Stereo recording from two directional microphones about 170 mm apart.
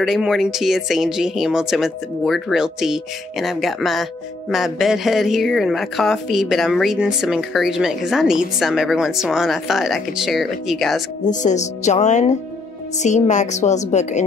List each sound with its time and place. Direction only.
0.0 s speech: centre (ahead or behind)
11.2 s a woman's voice: 45° left (ahead or behind)